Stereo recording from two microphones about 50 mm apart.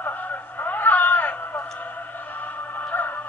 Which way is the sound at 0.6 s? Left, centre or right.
Left.